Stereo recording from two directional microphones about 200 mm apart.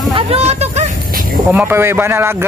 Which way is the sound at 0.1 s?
30° right (ahead or behind).